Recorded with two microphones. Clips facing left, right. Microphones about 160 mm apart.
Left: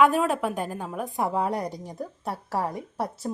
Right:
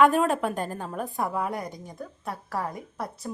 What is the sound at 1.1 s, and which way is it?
A woman's voice, 25° left (ahead or behind).